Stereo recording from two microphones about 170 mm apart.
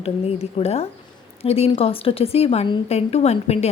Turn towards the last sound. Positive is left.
turn(degrees=40)  # may be behind; listen again after turning